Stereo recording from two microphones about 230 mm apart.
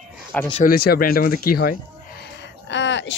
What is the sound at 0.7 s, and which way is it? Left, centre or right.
Speech, left.